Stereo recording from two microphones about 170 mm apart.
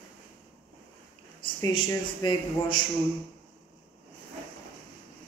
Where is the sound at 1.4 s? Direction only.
25° left (ahead or behind).